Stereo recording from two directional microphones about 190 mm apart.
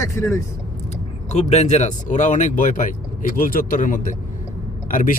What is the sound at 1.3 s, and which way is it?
Speech, 35° left (ahead or behind).